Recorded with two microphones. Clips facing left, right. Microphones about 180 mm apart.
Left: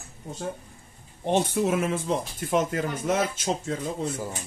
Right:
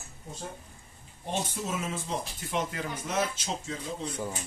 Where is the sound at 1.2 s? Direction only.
65° left (ahead or behind).